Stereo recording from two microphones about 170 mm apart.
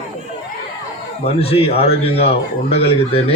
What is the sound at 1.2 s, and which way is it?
Speech, 35° left (ahead or behind).